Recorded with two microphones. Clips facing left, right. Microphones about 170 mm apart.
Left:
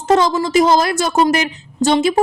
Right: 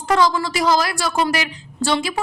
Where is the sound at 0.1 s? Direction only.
20° left (ahead or behind).